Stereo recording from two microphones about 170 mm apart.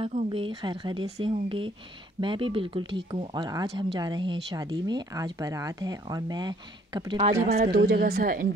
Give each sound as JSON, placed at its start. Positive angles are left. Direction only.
{"t": 0.3, "sound": "speech", "side_deg": -30}
{"t": 7.6, "sound": "a woman's voice", "side_deg": -75}